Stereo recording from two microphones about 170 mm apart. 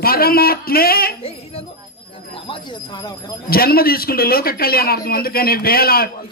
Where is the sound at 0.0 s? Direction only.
60° left (ahead or behind).